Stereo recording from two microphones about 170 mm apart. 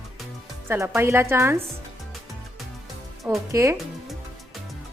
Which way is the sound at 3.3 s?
15° right (ahead or behind).